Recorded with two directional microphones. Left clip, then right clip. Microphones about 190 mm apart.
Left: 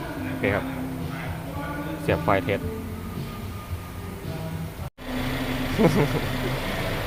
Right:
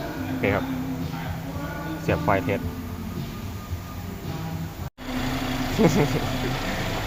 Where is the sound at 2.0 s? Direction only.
10° left (ahead or behind).